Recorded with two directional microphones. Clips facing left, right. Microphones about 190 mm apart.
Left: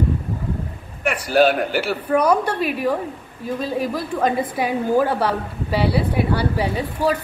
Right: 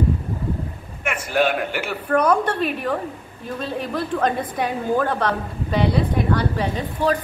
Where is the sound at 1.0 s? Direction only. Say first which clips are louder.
Left 4 dB; 35° left (ahead or behind).